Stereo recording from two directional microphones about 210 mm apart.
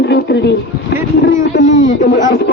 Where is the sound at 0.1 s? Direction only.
55° left (ahead or behind).